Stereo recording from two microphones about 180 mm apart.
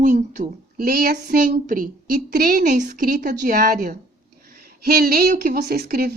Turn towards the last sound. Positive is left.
turn(degrees=-60)  # may be behind; listen again after turning